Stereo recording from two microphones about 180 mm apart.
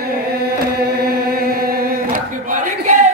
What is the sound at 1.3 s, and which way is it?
Choir, 55° right (ahead or behind).